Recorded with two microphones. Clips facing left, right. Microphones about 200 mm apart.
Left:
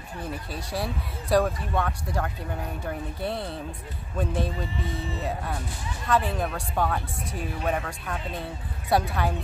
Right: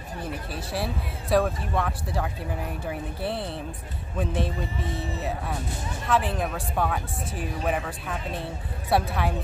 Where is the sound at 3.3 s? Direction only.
30° right (ahead or behind).